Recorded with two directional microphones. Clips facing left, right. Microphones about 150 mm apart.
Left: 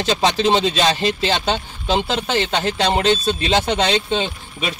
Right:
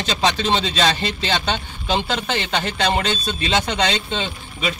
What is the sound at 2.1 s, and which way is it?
Speech, 25° left (ahead or behind).